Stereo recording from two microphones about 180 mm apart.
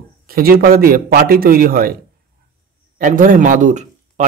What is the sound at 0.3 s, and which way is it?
A man's voice, 55° right (ahead or behind).